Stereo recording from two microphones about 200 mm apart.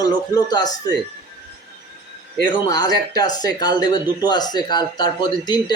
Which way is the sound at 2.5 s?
20° left (ahead or behind).